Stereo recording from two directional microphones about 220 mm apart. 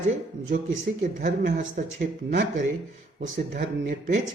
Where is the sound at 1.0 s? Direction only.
40° right (ahead or behind).